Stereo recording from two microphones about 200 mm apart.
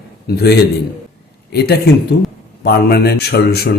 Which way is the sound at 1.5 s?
55° left (ahead or behind).